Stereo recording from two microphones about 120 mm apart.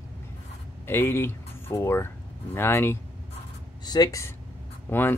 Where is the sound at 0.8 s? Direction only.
20° left (ahead or behind).